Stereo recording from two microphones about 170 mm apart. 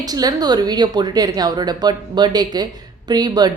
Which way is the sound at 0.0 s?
20° right (ahead or behind).